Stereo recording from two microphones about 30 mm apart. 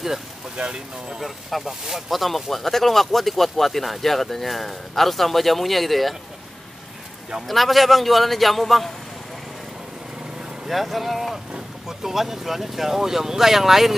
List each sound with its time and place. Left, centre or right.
0.6 s speech: right
1.2 s speech: centre
7.4 s speech: centre
10.7 s speech: centre